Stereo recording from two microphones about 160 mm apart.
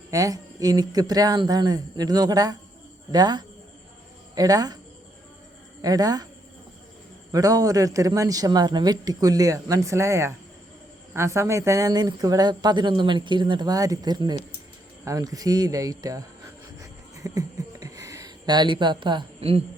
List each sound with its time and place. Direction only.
0.1 s speech: 20° right (ahead or behind)
5.8 s speech: 25° right (ahead or behind)
7.3 s speech: 20° right (ahead or behind)
15.0 s a sound: 20° right (ahead or behind); by 19.6 s 35° right (ahead or behind)